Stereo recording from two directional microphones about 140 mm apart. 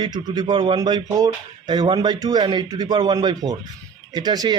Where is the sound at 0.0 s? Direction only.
30° right (ahead or behind).